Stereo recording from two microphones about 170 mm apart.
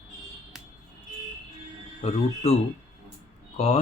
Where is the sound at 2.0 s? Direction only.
40° left (ahead or behind).